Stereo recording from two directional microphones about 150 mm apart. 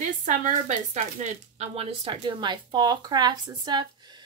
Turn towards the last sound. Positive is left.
turn(degrees=-30)  # may be behind; listen again after turning